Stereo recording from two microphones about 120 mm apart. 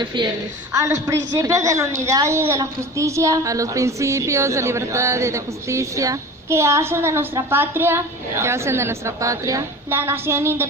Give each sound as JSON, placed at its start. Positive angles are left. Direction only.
{"t": 0.0, "sound": "a woman's voice", "side_deg": -40}
{"t": 0.7, "sound": "a woman's voice", "side_deg": -25}